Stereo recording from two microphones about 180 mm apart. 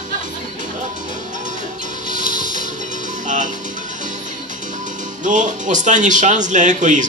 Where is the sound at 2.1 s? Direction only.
45° right (ahead or behind).